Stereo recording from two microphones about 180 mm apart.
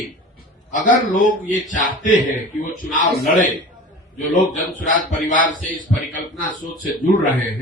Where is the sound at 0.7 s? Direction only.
45° left (ahead or behind).